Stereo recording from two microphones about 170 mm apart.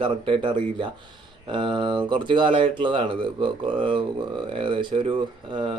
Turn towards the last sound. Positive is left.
turn(degrees=-30)  # may be behind; listen again after turning